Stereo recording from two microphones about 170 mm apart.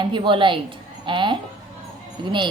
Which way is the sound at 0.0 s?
30° right (ahead or behind).